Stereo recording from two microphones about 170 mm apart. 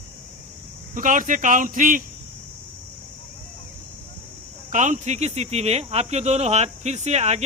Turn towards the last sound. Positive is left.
turn(degrees=-40)  # may be behind; listen again after turning